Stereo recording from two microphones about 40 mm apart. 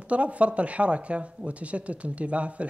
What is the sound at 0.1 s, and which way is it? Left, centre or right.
Speech, right.